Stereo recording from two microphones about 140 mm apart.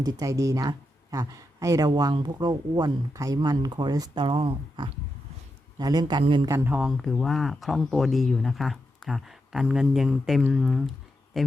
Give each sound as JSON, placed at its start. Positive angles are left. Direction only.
{"t": 0.0, "sound": "a man's voice", "side_deg": -25}
{"t": 6.5, "sound": "speech", "side_deg": -20}
{"t": 6.7, "sound": "speech", "side_deg": 0}